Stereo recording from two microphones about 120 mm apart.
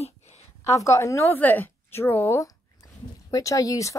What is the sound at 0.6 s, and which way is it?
Speech, 25° left (ahead or behind).